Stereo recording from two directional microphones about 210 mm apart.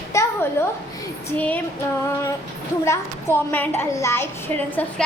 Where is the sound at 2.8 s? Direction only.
10° left (ahead or behind).